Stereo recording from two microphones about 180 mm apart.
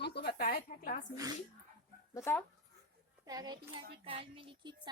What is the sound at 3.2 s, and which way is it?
Speech, 20° right (ahead or behind).